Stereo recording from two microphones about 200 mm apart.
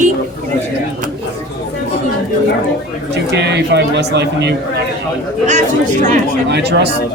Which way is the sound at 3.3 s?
55° right (ahead or behind).